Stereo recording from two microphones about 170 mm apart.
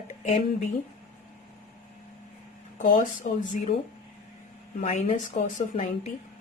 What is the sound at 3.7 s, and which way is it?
Speech, 85° left.